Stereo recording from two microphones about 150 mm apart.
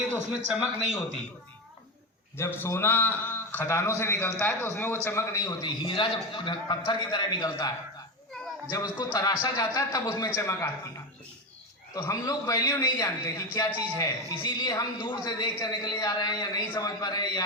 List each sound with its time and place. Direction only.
0.3 s a man's voice: 5° right (ahead or behind)
2.4 s a man's voice: 15° left (ahead or behind)
8.7 s a man's voice: 25° left (ahead or behind)
11.9 s a man's voice: 20° left (ahead or behind)